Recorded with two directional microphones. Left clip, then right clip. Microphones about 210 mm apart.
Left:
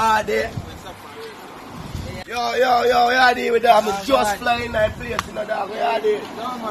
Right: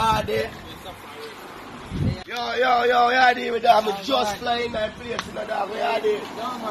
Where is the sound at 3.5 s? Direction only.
10° left (ahead or behind).